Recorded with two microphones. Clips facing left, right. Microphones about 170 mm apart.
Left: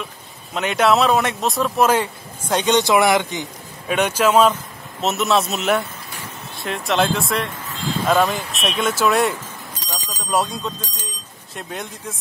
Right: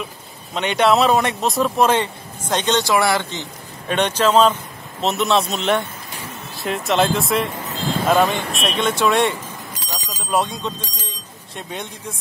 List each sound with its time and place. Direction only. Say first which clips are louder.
0.6 s speech: right 1 dB; centre (ahead or behind)